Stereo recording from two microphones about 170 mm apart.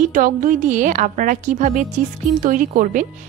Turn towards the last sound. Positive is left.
turn(degrees=-50)  # may be behind; listen again after turning